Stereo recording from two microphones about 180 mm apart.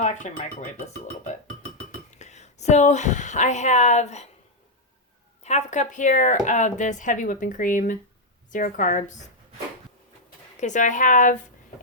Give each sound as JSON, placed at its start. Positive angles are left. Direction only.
{"t": 0.0, "sound": "speech", "side_deg": 40}
{"t": 2.0, "sound": "speech", "side_deg": 40}
{"t": 5.4, "sound": "speech", "side_deg": 40}
{"t": 10.6, "sound": "speech", "side_deg": 45}